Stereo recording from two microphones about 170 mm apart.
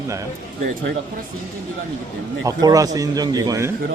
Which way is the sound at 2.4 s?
20° right (ahead or behind).